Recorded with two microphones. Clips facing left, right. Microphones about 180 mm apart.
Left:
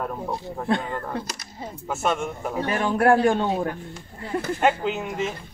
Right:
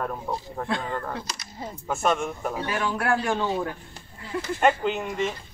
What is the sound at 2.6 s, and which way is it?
A man's voice, 45° left (ahead or behind).